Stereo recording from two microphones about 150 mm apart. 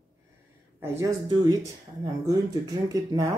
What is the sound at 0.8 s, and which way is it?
Speech, 25° right (ahead or behind).